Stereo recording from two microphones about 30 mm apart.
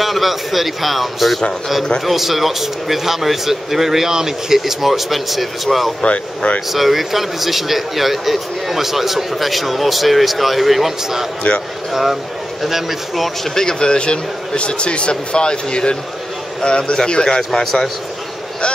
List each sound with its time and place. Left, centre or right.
0.0 s speech: centre
6.0 s speech: left
6.7 s speech: centre
11.9 s speech: centre
13.6 s a man's voice: left